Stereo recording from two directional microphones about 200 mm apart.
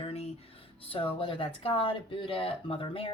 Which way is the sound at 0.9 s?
25° left (ahead or behind).